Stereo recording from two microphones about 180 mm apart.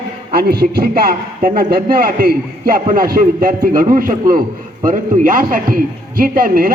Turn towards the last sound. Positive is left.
turn(degrees=-55)  # may be behind; listen again after turning